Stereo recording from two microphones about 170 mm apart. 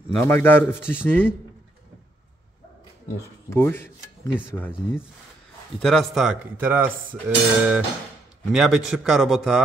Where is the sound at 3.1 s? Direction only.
15° left (ahead or behind).